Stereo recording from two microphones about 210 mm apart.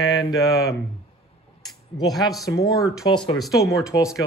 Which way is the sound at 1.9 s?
20° left (ahead or behind).